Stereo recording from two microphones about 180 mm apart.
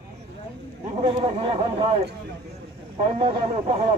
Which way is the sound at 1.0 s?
30° right (ahead or behind).